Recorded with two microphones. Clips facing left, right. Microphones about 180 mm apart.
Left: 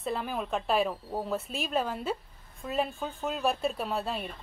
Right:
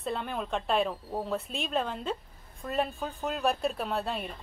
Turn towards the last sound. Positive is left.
turn(degrees=0)  # may be behind; listen again after turning